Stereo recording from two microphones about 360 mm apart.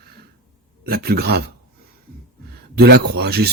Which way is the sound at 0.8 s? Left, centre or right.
Right.